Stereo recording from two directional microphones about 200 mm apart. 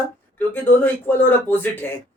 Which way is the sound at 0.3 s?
10° left (ahead or behind).